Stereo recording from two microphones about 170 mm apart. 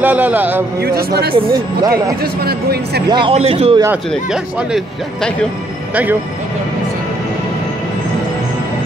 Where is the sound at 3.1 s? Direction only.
30° right (ahead or behind).